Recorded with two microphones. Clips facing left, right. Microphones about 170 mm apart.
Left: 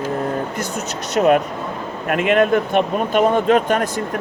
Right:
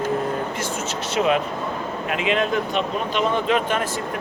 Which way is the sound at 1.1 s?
45° left (ahead or behind).